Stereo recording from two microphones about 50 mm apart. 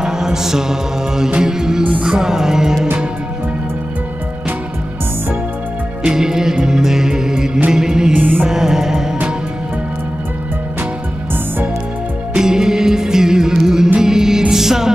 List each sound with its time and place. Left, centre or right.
0.0 s mantra: centre
1.4 s music: centre
1.8 s music: right
2.0 s music: centre
6.0 s music: centre
8.1 s music: right
8.5 s music: centre
12.4 s music: centre